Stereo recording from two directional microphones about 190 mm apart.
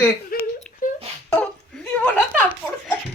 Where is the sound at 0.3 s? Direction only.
50° left (ahead or behind).